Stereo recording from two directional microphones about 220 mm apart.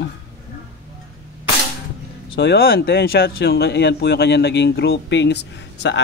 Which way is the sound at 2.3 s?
45° left (ahead or behind).